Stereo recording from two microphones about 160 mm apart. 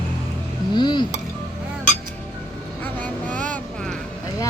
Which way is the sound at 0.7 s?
30° left (ahead or behind).